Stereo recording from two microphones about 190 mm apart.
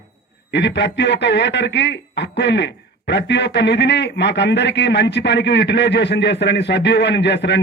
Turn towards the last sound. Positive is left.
turn(degrees=65)  # may be behind; listen again after turning